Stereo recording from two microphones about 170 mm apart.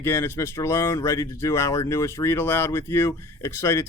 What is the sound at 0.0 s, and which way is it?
Speech, 15° left (ahead or behind).